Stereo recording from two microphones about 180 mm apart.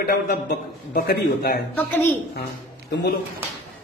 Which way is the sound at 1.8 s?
10° left (ahead or behind).